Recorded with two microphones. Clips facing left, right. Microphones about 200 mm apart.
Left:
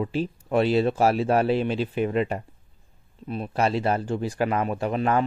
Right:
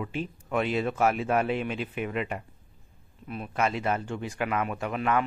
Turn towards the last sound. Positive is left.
turn(degrees=35)  # may be behind; listen again after turning